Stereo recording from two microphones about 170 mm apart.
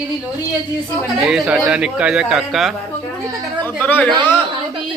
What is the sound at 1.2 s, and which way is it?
Speech, centre (ahead or behind).